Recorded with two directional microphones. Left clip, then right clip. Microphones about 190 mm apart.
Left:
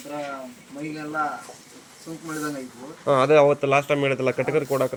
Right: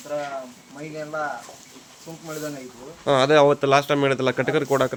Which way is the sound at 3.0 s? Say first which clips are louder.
Even; 20° right (ahead or behind).